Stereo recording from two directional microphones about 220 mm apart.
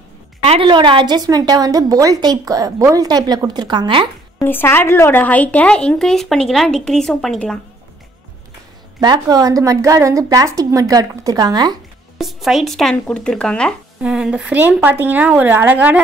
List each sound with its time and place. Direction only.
0.4 s a woman's voice: 25° right (ahead or behind)
4.4 s a woman's voice: 10° left (ahead or behind)
9.0 s a woman's voice: 15° right (ahead or behind)
12.2 s a woman's voice: centre (ahead or behind)